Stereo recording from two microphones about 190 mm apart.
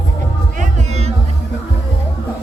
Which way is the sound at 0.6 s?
35° right (ahead or behind).